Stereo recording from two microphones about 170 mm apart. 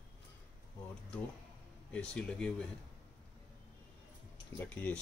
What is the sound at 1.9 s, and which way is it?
Speech, 5° left (ahead or behind).